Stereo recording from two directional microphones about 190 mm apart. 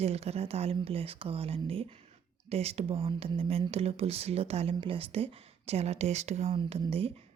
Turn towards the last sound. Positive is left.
turn(degrees=-30)  # may be behind; listen again after turning